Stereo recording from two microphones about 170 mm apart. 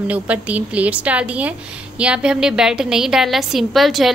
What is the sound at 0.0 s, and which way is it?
A woman's voice, 10° right (ahead or behind).